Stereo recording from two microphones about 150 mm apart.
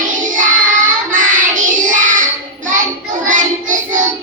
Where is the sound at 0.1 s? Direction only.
60° right (ahead or behind).